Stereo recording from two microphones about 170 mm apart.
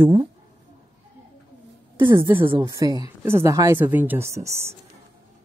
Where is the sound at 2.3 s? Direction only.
30° right (ahead or behind).